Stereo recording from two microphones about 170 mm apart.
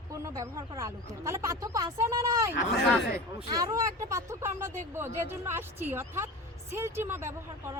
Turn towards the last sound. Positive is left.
turn(degrees=-15)  # may be behind; listen again after turning